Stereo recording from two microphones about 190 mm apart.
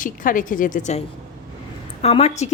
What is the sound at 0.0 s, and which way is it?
A woman's voice, 45° left (ahead or behind).